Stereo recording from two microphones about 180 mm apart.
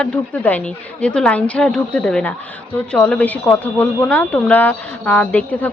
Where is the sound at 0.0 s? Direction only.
10° left (ahead or behind).